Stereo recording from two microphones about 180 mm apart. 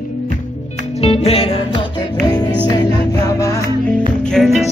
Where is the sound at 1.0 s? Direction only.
35° left (ahead or behind).